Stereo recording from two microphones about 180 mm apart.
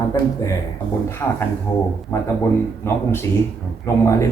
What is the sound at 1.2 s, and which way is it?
Speech, 15° left (ahead or behind).